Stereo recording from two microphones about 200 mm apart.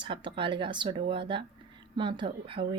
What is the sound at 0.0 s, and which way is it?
Speech, 25° right (ahead or behind).